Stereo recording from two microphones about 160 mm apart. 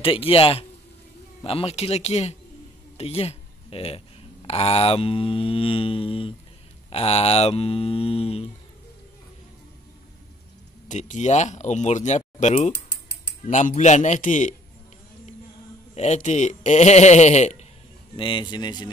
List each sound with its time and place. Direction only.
0.0 s speech: 35° left (ahead or behind)
10.9 s speech: 50° left (ahead or behind)
15.9 s speech: 45° left (ahead or behind)
18.1 s a man's voice: 30° left (ahead or behind)